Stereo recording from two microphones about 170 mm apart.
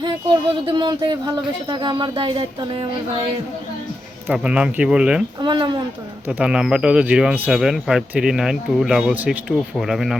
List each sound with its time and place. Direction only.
0.6 s speech: 30° right (ahead or behind)
4.3 s speech: 5° right (ahead or behind)
5.4 s speech: 25° right (ahead or behind)
6.2 s speech: 5° right (ahead or behind)